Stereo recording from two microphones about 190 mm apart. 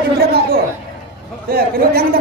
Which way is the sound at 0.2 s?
60° right (ahead or behind).